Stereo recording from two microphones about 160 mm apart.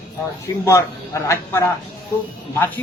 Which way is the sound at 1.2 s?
15° left (ahead or behind).